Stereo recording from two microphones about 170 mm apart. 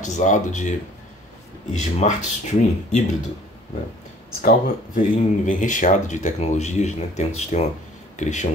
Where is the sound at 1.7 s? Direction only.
45° left (ahead or behind).